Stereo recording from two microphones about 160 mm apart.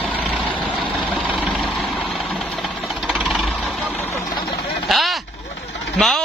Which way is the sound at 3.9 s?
15° left (ahead or behind).